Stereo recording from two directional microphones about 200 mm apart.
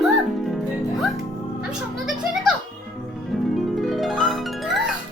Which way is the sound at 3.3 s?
Centre (ahead or behind).